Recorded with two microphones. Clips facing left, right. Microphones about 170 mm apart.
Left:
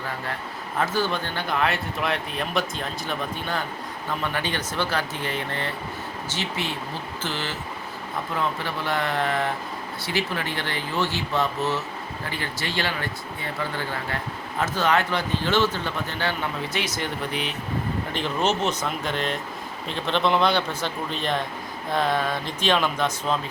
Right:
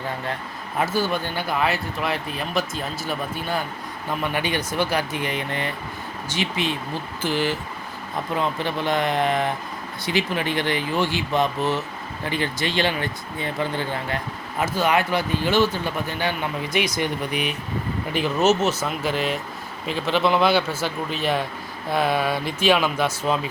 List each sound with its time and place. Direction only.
0.8 s speech: 10° right (ahead or behind)